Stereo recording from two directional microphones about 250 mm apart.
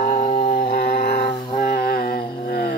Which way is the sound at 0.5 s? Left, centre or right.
Left.